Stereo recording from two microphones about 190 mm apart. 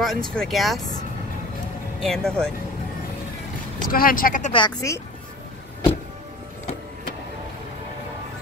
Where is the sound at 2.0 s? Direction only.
5° left (ahead or behind).